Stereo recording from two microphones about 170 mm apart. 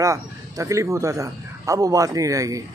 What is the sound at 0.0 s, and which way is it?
A man's voice, 20° right (ahead or behind).